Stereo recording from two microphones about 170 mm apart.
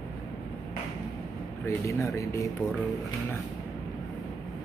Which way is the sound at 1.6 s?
15° left (ahead or behind).